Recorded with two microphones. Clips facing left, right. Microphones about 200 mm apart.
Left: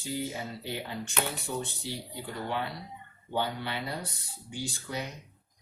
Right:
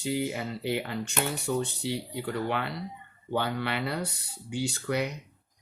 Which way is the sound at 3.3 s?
70° right (ahead or behind).